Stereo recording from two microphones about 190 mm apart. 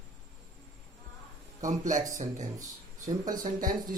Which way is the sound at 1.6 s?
40° right (ahead or behind).